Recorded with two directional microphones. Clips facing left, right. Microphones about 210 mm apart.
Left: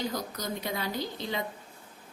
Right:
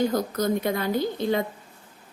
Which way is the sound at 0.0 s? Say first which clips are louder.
Right 10 dB; 50° right (ahead or behind).